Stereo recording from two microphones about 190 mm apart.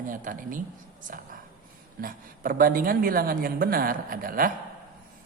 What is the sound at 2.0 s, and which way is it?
A man's voice, 50° right (ahead or behind).